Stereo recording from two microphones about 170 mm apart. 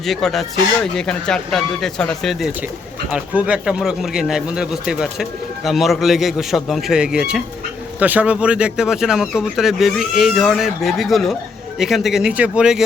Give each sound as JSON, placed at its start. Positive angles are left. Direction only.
{"t": 0.0, "sound": "speech", "side_deg": 0}